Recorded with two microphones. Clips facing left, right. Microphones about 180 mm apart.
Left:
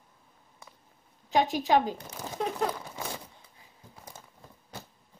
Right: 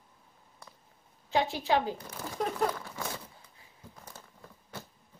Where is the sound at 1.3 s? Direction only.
15° left (ahead or behind).